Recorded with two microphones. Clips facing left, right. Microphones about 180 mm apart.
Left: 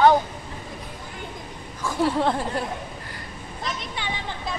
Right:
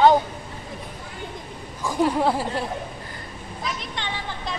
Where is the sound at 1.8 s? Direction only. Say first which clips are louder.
Right 1 dB; 15° right (ahead or behind).